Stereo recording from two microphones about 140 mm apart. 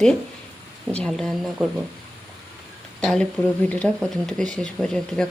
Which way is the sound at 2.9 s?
5° left (ahead or behind).